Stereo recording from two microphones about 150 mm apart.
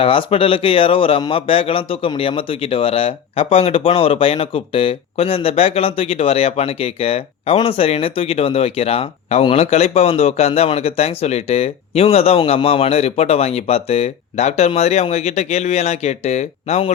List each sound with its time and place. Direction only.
0.0 s speech: 35° left (ahead or behind)